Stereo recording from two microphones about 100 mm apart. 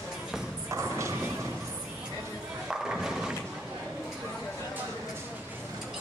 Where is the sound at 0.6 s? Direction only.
30° right (ahead or behind).